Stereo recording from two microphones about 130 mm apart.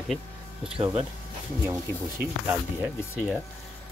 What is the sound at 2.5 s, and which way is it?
Speech, 10° right (ahead or behind).